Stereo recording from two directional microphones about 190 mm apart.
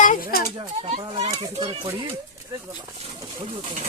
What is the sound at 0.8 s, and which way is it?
A child's voice, 30° right (ahead or behind).